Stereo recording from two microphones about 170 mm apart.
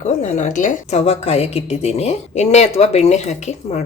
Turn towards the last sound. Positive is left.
turn(degrees=45)  # may be behind; listen again after turning